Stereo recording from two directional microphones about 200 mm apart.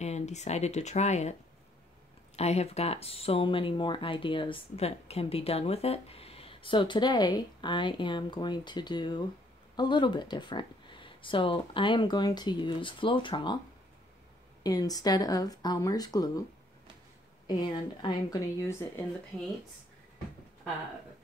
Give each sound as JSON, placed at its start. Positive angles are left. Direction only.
{"t": 0.0, "sound": "speech", "side_deg": 35}
{"t": 2.3, "sound": "speech", "side_deg": 30}
{"t": 14.6, "sound": "speech", "side_deg": 20}
{"t": 17.5, "sound": "speech", "side_deg": 20}